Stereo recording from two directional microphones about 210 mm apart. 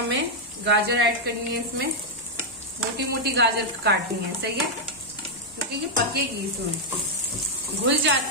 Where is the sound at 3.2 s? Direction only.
55° right (ahead or behind).